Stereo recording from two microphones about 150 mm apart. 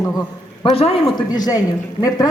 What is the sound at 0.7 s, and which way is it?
Speech, 40° left (ahead or behind).